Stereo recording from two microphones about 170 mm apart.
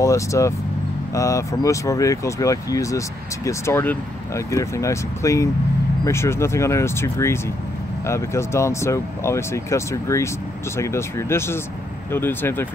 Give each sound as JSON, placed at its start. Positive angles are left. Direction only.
{"t": 0.0, "sound": "speech", "side_deg": 20}